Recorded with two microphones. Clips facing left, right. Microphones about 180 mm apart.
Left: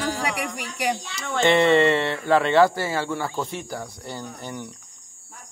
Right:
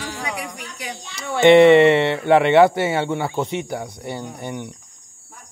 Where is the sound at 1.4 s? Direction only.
15° right (ahead or behind).